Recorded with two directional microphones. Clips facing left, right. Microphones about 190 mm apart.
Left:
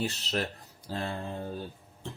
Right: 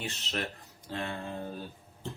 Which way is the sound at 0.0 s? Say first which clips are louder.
Left 4 dB; 35° left (ahead or behind).